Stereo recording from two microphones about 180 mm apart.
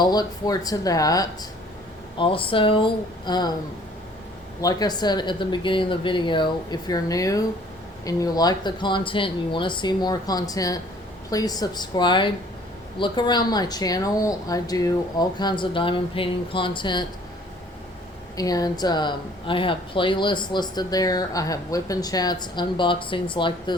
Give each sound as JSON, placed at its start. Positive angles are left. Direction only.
{"t": 0.0, "sound": "speech", "side_deg": 20}
{"t": 4.6, "sound": "speech", "side_deg": 20}
{"t": 18.3, "sound": "speech", "side_deg": 20}